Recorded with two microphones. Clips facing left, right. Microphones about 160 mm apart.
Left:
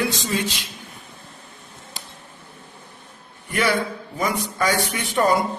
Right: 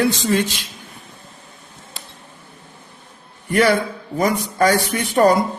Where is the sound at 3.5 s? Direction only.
45° right (ahead or behind).